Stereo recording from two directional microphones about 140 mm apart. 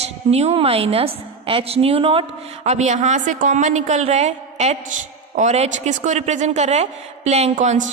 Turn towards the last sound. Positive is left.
turn(degrees=-60)  # may be behind; listen again after turning